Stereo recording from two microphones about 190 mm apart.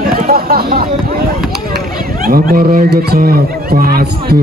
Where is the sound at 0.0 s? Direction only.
50° right (ahead or behind).